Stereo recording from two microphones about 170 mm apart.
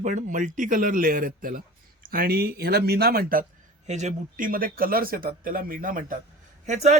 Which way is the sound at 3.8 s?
40° right (ahead or behind).